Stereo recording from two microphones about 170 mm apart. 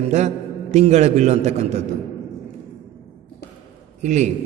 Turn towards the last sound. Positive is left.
turn(degrees=-45)  # may be behind; listen again after turning